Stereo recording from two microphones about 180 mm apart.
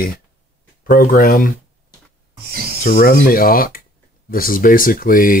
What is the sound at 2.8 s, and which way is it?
Speech, 50° left (ahead or behind).